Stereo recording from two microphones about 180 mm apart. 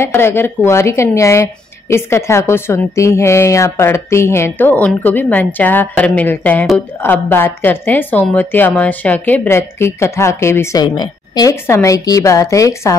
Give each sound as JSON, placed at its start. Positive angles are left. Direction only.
{"t": 0.0, "sound": "a woman's voice", "side_deg": 15}